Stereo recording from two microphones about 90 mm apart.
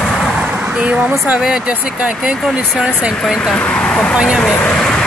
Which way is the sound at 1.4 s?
10° right (ahead or behind).